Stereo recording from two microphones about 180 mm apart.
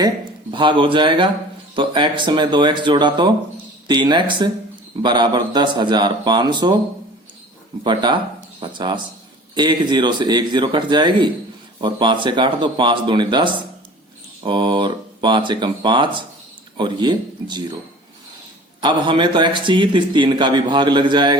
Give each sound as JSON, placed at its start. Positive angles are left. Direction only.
{"t": 0.5, "sound": "a man's voice", "side_deg": -25}
{"t": 7.9, "sound": "a man's voice", "side_deg": -25}
{"t": 18.8, "sound": "a man's voice", "side_deg": -25}